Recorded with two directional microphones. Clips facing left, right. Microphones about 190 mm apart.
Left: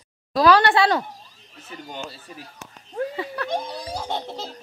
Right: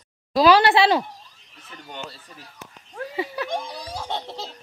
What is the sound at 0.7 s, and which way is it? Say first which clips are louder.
Speech: right 1 dB; 25° right (ahead or behind).